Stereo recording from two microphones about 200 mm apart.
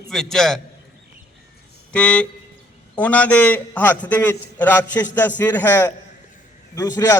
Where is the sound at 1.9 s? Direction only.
5° left (ahead or behind).